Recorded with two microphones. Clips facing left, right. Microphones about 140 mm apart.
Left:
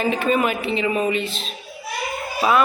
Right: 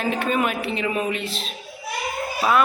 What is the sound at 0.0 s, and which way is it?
A woman's voice, centre (ahead or behind).